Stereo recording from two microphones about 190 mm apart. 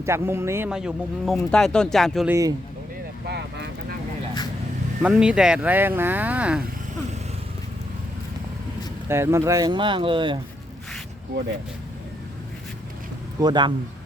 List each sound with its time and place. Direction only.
0.0 s speech: 15° right (ahead or behind)
2.3 s speech: 20° right (ahead or behind)
3.2 s vehicle: 60° right (ahead or behind)
5.0 s speech: 5° right (ahead or behind)
9.0 s speech: 15° right (ahead or behind)
13.4 s speech: 20° right (ahead or behind)